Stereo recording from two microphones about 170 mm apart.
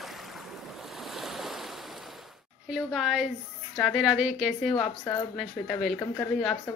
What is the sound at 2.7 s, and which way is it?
Speech, centre (ahead or behind).